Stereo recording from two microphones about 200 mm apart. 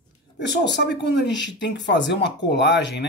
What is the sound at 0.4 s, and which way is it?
Speech, 60° left (ahead or behind).